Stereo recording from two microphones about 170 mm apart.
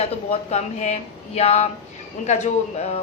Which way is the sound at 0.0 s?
40° left (ahead or behind).